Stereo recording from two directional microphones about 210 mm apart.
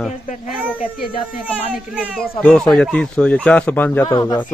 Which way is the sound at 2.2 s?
5° left (ahead or behind).